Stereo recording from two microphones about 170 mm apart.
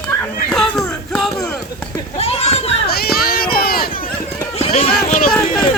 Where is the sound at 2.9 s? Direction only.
65° left (ahead or behind).